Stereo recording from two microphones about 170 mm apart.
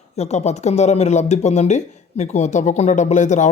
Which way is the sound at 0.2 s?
40° left (ahead or behind).